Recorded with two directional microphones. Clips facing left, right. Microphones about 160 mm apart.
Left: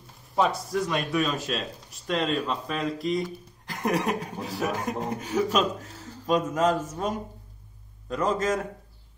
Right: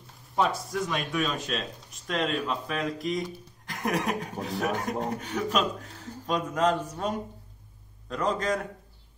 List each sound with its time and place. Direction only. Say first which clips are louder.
0.4 s speech: left 2 dB; centre (ahead or behind)